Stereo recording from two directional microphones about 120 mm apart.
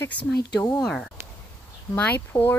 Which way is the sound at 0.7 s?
5° left (ahead or behind).